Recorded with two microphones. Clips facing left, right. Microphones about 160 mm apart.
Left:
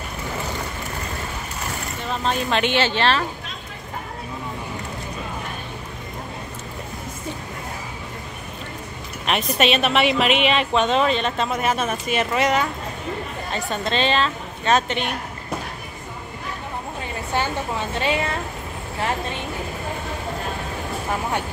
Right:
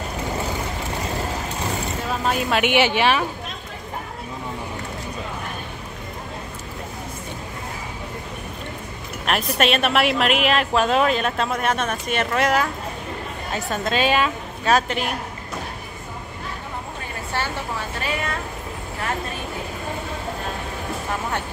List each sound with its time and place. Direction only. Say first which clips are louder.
2.0 s speech: even; 5° right (ahead or behind)
9.2 s a woman's voice: even; centre (ahead or behind)
17.3 s a woman's voice: left 3 dB; 20° left (ahead or behind)